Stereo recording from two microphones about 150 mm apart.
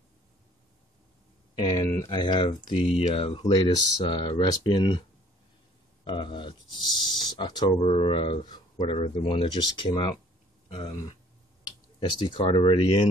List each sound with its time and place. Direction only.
1.5 s speech: 30° left (ahead or behind)
6.0 s speech: 35° left (ahead or behind)